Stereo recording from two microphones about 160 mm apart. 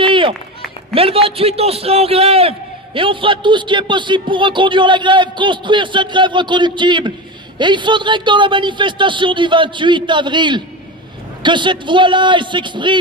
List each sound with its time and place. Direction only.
0.0 s run: 30° right (ahead or behind)
0.9 s a man's voice: 35° right (ahead or behind)